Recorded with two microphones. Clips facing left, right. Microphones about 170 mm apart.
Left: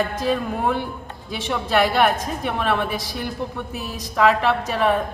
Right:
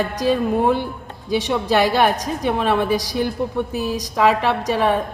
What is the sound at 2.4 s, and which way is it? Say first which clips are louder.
Speech: right 5 dB; 15° right (ahead or behind).